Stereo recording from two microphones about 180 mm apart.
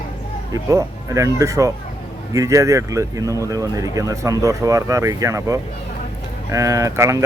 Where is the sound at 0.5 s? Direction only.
20° right (ahead or behind).